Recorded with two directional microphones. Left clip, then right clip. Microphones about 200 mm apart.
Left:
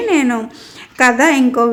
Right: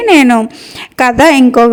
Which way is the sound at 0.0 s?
40° right (ahead or behind).